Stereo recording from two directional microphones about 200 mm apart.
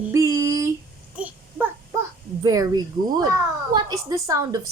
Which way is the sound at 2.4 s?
20° right (ahead or behind).